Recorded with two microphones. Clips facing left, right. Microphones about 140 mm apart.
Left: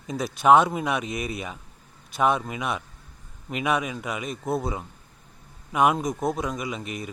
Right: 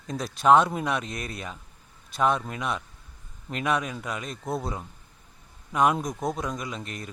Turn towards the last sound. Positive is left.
turn(degrees=5)  # may be behind; listen again after turning